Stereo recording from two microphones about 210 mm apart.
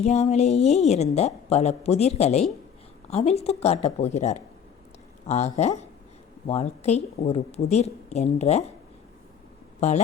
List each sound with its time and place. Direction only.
0.0 s a woman's voice: 30° left (ahead or behind)